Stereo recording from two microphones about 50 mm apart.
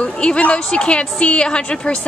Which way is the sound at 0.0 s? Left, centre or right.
Left.